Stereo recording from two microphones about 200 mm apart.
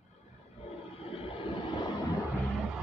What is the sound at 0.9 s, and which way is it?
Vehicle, 25° left (ahead or behind).